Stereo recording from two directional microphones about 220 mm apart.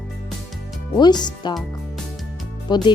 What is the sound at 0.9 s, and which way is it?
Speech, 20° left (ahead or behind).